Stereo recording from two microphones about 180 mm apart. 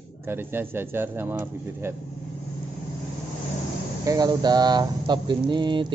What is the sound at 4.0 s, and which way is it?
Speech, 20° right (ahead or behind).